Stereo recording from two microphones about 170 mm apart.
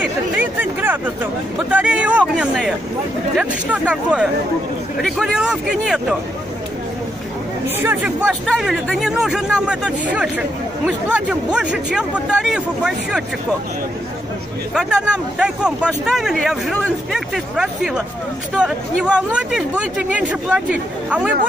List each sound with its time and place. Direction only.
0.0 s speech: 10° right (ahead or behind)
7.6 s speech: 10° right (ahead or behind)
14.7 s speech: 5° right (ahead or behind)